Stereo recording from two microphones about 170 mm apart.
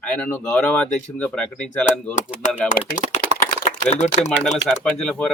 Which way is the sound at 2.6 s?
50° left (ahead or behind).